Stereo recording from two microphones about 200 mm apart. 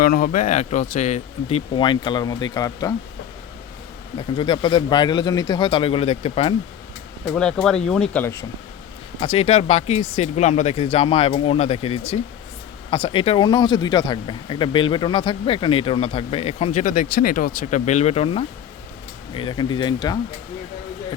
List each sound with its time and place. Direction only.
0.0 s speech: 45° left (ahead or behind); by 2.9 s 20° left (ahead or behind)
4.4 s speech: 25° left (ahead or behind)
7.3 s speech: 5° left (ahead or behind)
9.2 s speech: 25° left (ahead or behind)